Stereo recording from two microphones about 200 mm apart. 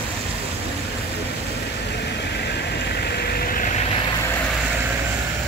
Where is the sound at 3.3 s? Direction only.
45° left (ahead or behind).